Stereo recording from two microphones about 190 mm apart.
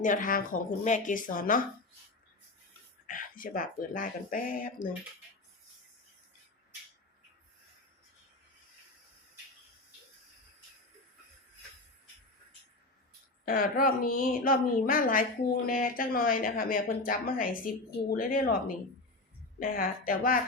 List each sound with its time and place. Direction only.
0.0 s a woman's voice: 45° left (ahead or behind)
3.1 s a woman's voice: 45° left (ahead or behind)
13.4 s a woman's voice: 50° left (ahead or behind)
19.5 s a woman's voice: 50° left (ahead or behind)